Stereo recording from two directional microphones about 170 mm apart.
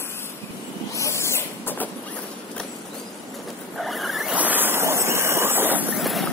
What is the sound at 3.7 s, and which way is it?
Vehicle, centre (ahead or behind).